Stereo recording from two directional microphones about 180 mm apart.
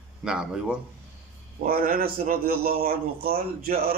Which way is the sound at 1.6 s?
55° right (ahead or behind).